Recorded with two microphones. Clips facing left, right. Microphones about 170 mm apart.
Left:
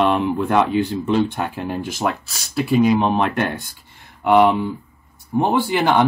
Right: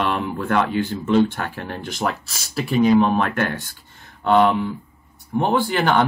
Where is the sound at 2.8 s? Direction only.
15° left (ahead or behind).